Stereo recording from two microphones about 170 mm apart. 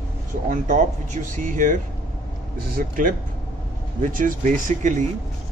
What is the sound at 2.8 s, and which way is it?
Speech, 55° right (ahead or behind).